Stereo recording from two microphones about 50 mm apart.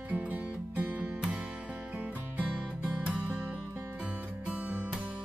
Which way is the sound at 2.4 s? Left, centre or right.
Right.